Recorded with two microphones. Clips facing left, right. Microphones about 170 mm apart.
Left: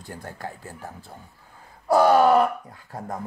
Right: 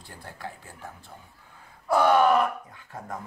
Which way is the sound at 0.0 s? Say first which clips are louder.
Left 5 dB; 45° left (ahead or behind).